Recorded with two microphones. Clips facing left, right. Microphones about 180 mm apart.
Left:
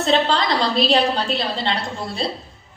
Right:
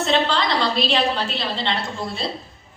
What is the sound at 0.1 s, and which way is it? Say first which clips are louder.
A woman's voice: left 3 dB; 40° left (ahead or behind).